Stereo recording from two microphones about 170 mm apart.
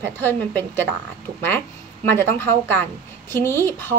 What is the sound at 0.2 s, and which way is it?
Speech, 10° left (ahead or behind).